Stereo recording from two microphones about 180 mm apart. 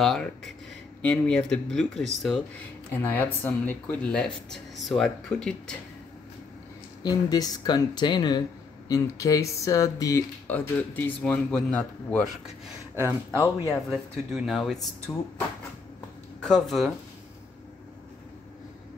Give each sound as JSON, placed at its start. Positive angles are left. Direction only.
{"t": 0.0, "sound": "speech", "side_deg": 0}
{"t": 2.9, "sound": "speech", "side_deg": 10}
{"t": 7.0, "sound": "speech", "side_deg": 20}
{"t": 12.9, "sound": "speech", "side_deg": -15}
{"t": 13.8, "sound": "speech", "side_deg": 0}
{"t": 16.4, "sound": "speech", "side_deg": 0}